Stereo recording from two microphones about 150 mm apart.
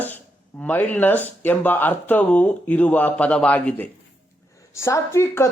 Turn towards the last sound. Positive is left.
turn(degrees=15)  # may be behind; listen again after turning